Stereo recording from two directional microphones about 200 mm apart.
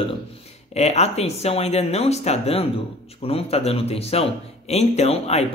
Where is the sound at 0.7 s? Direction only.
30° left (ahead or behind).